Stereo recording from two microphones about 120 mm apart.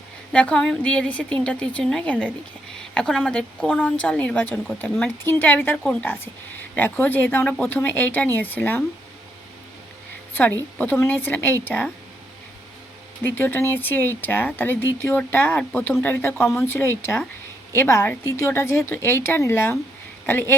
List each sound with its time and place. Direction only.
0.3 s speech: 10° left (ahead or behind)
10.8 s speech: 15° left (ahead or behind)
13.2 s speech: 15° left (ahead or behind)